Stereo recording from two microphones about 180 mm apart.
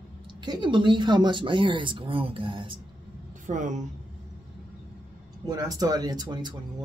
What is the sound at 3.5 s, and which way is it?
Speech, 45° right (ahead or behind).